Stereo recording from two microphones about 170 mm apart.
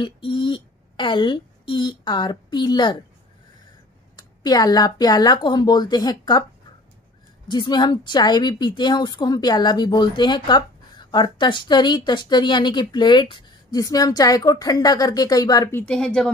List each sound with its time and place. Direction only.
0.0 s a woman's voice: 30° left (ahead or behind)
4.2 s a woman's voice: 25° left (ahead or behind)
7.4 s a woman's voice: 25° left (ahead or behind)
15.8 s speech: 5° left (ahead or behind)